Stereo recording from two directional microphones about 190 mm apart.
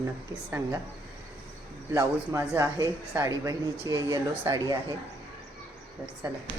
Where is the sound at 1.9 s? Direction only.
15° right (ahead or behind).